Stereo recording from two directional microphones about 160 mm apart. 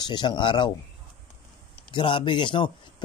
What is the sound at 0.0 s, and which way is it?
Speech, 25° left (ahead or behind).